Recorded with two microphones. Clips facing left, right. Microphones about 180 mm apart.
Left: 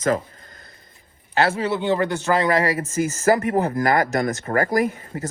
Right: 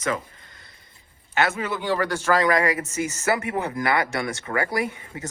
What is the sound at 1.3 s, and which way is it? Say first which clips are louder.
A man's voice: left 4 dB; 30° left (ahead or behind).